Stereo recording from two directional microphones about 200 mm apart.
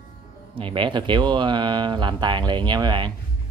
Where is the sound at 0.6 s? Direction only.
25° right (ahead or behind).